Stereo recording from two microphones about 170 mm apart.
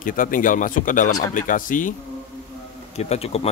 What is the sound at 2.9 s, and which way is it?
Speech, 40° left (ahead or behind).